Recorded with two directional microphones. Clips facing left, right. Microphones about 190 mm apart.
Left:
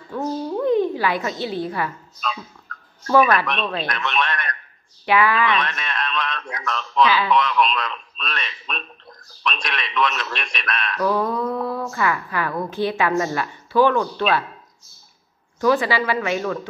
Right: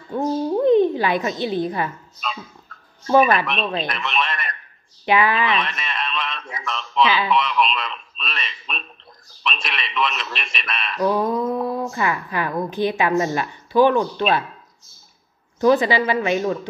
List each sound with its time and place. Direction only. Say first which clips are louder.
0.1 s a sound: right 4 dB; 25° right (ahead or behind)
2.7 s a sound: left 6 dB; centre (ahead or behind)
3.4 s a man's voice: right 1 dB; centre (ahead or behind)
5.0 s a woman's voice: even; 20° right (ahead or behind)
5.6 s a man's voice: left 1 dB; centre (ahead or behind)
11.0 s a woman's voice: right 2 dB; 20° right (ahead or behind)
15.6 s a woman's voice: right 3 dB; 20° right (ahead or behind)